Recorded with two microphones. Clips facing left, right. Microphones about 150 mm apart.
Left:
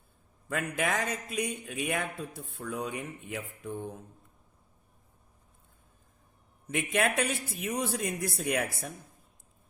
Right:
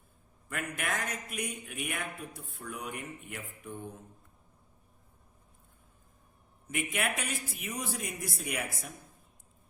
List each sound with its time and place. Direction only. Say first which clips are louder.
0.4 s a man's voice: left 6 dB; 90° left
6.7 s speech: left 5 dB; 85° left